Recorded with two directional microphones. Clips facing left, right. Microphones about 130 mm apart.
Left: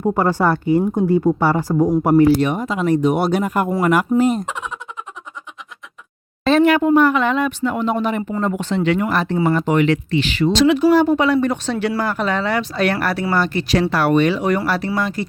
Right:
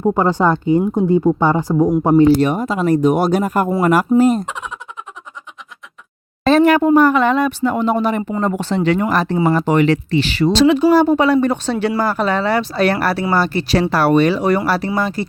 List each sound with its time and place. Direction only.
0.1 s speech: 15° right (ahead or behind)
2.4 s speech: 40° right (ahead or behind)
4.4 s a sound: centre (ahead or behind)
6.4 s speech: 40° right (ahead or behind)